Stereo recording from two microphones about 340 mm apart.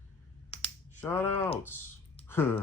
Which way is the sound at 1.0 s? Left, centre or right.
Centre.